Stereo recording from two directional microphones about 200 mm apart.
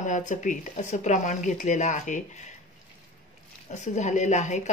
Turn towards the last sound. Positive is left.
turn(degrees=35)  # may be behind; listen again after turning